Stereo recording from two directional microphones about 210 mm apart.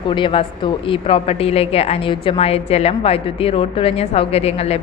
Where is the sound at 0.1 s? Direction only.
25° left (ahead or behind).